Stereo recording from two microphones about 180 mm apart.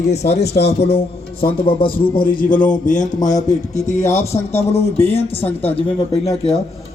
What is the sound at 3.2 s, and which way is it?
A man's voice, 40° left (ahead or behind).